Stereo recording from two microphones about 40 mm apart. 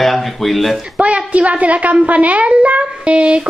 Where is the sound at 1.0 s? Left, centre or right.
Right.